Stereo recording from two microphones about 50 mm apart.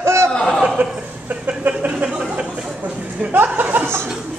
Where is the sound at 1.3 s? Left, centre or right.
Right.